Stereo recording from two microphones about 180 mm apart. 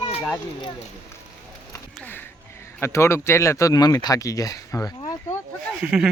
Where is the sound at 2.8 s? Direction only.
15° left (ahead or behind).